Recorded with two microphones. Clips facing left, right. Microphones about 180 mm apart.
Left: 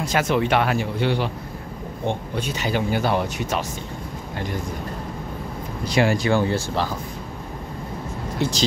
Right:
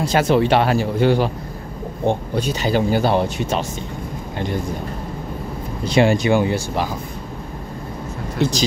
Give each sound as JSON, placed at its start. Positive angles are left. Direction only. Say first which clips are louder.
{"t": 0.0, "sound": "speech", "louder": "right 5 dB", "side_deg": -30}
{"t": 5.9, "sound": "speech", "louder": "right 4 dB", "side_deg": -25}
{"t": 8.4, "sound": "speech", "louder": "right 4 dB", "side_deg": -15}